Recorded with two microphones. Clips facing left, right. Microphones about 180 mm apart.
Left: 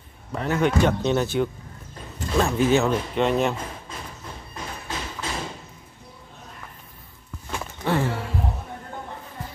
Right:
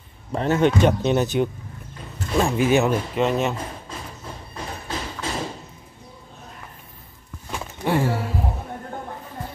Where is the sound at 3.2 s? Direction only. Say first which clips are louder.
Left 1 dB; centre (ahead or behind).